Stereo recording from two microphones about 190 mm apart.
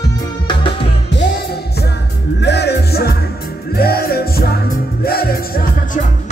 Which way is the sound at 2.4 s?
60° left (ahead or behind).